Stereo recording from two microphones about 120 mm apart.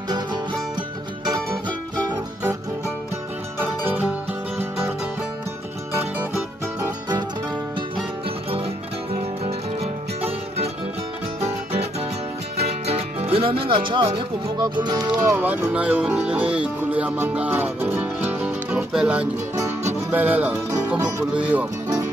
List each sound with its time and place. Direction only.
9.4 s music: 60° right (ahead or behind)
12.5 s speech: 60° right (ahead or behind); by 15.3 s 35° right (ahead or behind)
15.3 s speech: 10° right (ahead or behind)
16.9 s music: 10° right (ahead or behind)
21.3 s speech: 10° right (ahead or behind)